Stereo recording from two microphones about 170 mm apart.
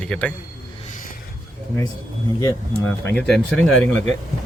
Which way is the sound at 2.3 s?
15° left (ahead or behind).